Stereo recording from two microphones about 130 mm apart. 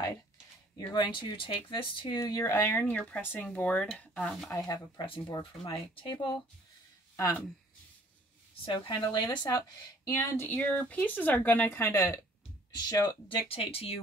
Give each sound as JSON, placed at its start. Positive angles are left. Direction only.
{"t": 0.9, "sound": "speech", "side_deg": 35}
{"t": 2.1, "sound": "a woman's voice", "side_deg": 25}
{"t": 4.6, "sound": "speech", "side_deg": 30}
{"t": 5.0, "sound": "speech", "side_deg": 40}
{"t": 7.2, "sound": "speech", "side_deg": 25}
{"t": 8.6, "sound": "a woman's voice", "side_deg": 35}
{"t": 12.7, "sound": "speech", "side_deg": 30}
{"t": 13.3, "sound": "speech", "side_deg": 45}